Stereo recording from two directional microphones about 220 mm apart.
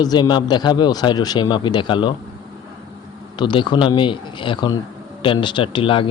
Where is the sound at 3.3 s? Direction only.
20° left (ahead or behind).